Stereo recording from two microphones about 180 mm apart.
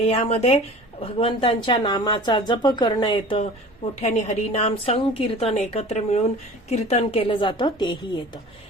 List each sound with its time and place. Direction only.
0.0 s speech: 35° left (ahead or behind)
4.0 s a woman's voice: 40° left (ahead or behind)